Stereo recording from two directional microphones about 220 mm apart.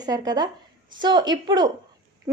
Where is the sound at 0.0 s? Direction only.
15° right (ahead or behind).